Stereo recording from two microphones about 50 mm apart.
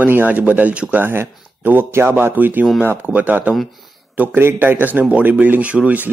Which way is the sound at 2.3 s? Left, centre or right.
Right.